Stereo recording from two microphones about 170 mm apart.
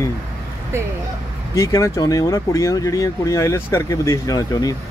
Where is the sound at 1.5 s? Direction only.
20° left (ahead or behind).